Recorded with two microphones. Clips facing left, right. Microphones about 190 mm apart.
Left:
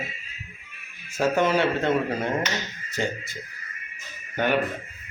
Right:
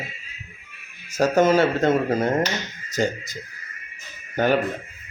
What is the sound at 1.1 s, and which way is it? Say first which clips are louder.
Speech: right 4 dB; 40° right (ahead or behind).